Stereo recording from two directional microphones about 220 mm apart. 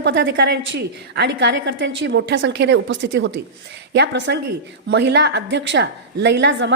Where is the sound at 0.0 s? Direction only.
50° right (ahead or behind).